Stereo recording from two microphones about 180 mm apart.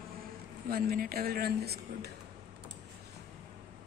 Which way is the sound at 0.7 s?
55° right (ahead or behind).